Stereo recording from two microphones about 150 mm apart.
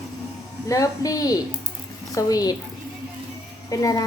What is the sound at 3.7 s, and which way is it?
Speech, 25° left (ahead or behind).